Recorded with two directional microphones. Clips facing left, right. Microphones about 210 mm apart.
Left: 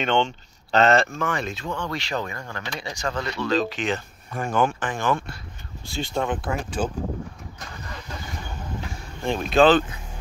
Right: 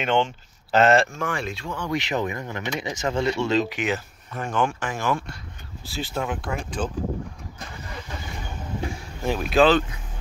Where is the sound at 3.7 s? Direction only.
10° right (ahead or behind).